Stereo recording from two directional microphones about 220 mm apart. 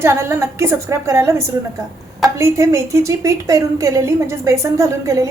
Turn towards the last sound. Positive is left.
turn(degrees=-15)  # may be behind; listen again after turning